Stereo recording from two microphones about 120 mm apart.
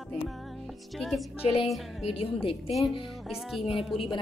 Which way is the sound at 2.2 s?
50° left (ahead or behind).